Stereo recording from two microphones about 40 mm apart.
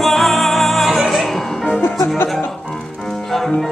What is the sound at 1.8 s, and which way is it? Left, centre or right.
Music, left.